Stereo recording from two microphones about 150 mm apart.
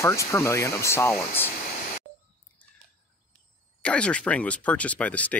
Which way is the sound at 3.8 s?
5° left (ahead or behind).